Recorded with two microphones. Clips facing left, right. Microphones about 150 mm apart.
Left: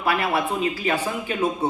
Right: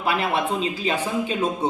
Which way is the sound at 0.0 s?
25° right (ahead or behind).